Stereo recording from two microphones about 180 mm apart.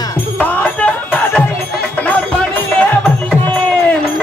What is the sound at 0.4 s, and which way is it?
Music, 10° left (ahead or behind).